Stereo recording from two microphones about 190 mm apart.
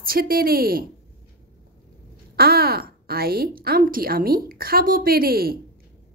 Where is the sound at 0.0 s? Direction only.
50° right (ahead or behind).